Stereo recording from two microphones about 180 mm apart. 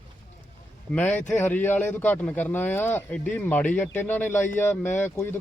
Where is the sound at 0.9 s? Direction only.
10° left (ahead or behind).